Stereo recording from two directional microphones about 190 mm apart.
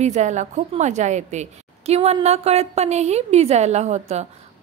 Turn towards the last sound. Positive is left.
turn(degrees=-35)  # may be behind; listen again after turning